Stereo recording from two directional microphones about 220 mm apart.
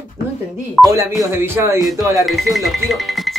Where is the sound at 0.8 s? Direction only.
15° right (ahead or behind).